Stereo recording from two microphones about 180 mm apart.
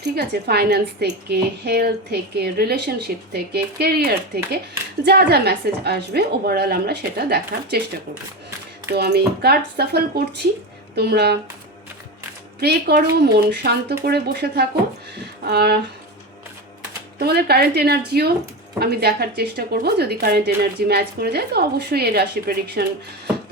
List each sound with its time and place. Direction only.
0.2 s a woman's voice: 65° right (ahead or behind)
8.9 s a woman's voice: 65° right (ahead or behind)
12.5 s a woman's voice: 60° right (ahead or behind)
17.2 s a woman's voice: 60° right (ahead or behind)